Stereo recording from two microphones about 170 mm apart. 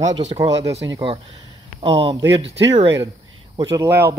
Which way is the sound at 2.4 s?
90° right.